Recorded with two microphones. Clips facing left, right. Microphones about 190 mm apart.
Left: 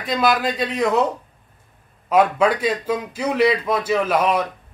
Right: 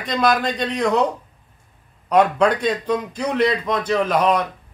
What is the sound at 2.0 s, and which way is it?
A man's voice, 5° left (ahead or behind).